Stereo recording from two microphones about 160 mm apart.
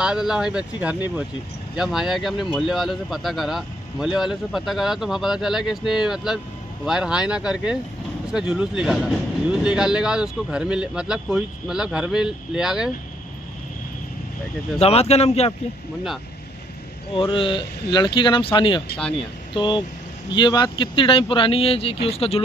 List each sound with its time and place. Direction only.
0.0 s speech: 5° right (ahead or behind)
14.8 s speech: 40° left (ahead or behind)
17.1 s speech: 35° left (ahead or behind)